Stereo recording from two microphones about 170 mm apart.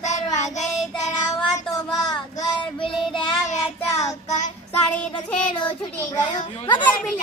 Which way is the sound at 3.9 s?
20° left (ahead or behind).